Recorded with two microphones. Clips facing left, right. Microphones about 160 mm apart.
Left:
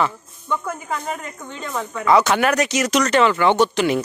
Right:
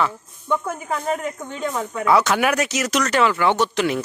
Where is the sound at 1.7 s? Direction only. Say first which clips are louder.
Left 2 dB; 15° right (ahead or behind).